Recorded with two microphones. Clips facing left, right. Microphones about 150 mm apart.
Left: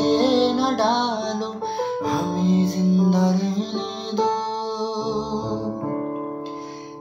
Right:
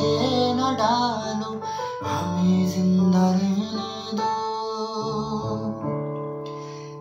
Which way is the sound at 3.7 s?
20° left (ahead or behind).